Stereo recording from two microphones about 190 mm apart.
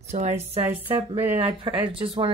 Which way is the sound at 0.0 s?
35° right (ahead or behind).